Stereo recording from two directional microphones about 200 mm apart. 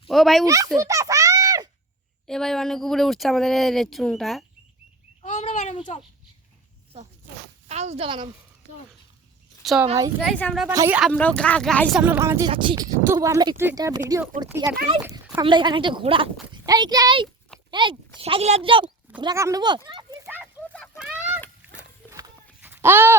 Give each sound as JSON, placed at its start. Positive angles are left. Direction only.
{"t": 0.1, "sound": "speech", "side_deg": 0}
{"t": 0.4, "sound": "speech", "side_deg": -15}
{"t": 0.8, "sound": "a sound", "side_deg": -15}
{"t": 2.2, "sound": "speech", "side_deg": 0}
{"t": 5.2, "sound": "bird", "side_deg": 35}
{"t": 7.7, "sound": "speech", "side_deg": -35}
{"t": 9.6, "sound": "speech", "side_deg": 0}
{"t": 10.7, "sound": "speech", "side_deg": -15}
{"t": 11.1, "sound": "speech", "side_deg": 5}
{"t": 12.5, "sound": "speech", "side_deg": -25}
{"t": 19.2, "sound": "speech", "side_deg": -15}
{"t": 20.2, "sound": "a sound", "side_deg": -10}